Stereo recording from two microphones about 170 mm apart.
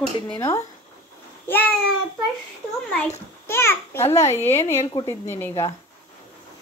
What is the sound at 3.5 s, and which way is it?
A child's voice, 15° left (ahead or behind).